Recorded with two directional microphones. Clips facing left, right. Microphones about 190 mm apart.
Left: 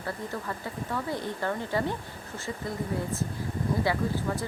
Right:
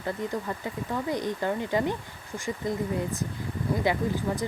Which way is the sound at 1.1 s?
15° right (ahead or behind).